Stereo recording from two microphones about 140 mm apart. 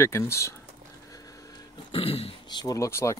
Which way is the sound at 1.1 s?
25° left (ahead or behind).